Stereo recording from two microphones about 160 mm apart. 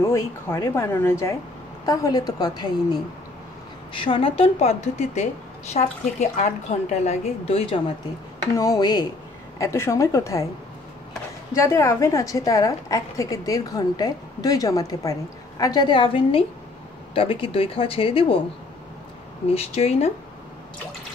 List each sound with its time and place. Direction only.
0.0 s a woman's voice: 20° left (ahead or behind); by 7.8 s 35° left (ahead or behind)
8.5 s a woman's voice: 20° left (ahead or behind)
11.5 s a woman's voice: 20° left (ahead or behind); by 18.4 s 35° left (ahead or behind)
19.5 s a woman's voice: 40° left (ahead or behind)